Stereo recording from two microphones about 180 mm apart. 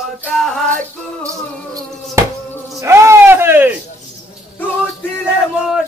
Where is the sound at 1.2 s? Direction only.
15° right (ahead or behind).